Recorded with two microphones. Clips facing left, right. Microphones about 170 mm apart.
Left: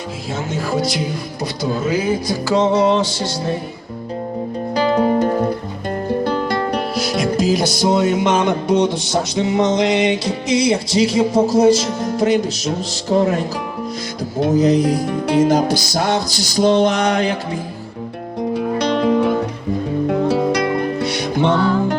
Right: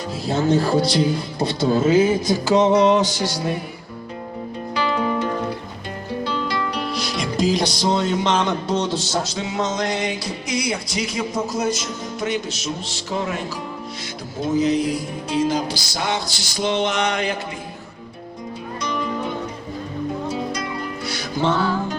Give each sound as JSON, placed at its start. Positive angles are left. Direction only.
{"t": 0.3, "sound": "speech", "side_deg": -35}
{"t": 4.7, "sound": "music", "side_deg": 40}
{"t": 7.3, "sound": "music", "side_deg": 5}
{"t": 9.3, "sound": "speech", "side_deg": 20}
{"t": 11.9, "sound": "speech", "side_deg": 70}
{"t": 12.1, "sound": "music", "side_deg": 35}
{"t": 14.5, "sound": "music", "side_deg": 40}
{"t": 15.0, "sound": "music", "side_deg": 65}
{"t": 18.5, "sound": "music", "side_deg": 70}